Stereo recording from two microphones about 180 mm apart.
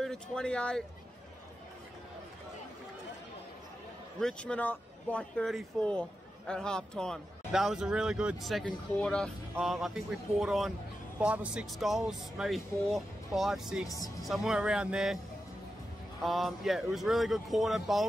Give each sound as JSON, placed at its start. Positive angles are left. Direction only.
{"t": 0.0, "sound": "speech", "side_deg": 5}
{"t": 4.2, "sound": "speech", "side_deg": 5}
{"t": 13.8, "sound": "speech", "side_deg": 20}
{"t": 14.2, "sound": "speech", "side_deg": 0}
{"t": 16.2, "sound": "speech", "side_deg": 0}